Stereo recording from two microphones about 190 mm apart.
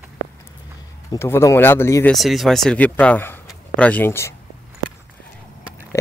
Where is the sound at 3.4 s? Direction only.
5° left (ahead or behind).